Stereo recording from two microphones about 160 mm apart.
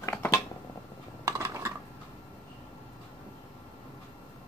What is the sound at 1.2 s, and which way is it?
Dishes, 20° right (ahead or behind).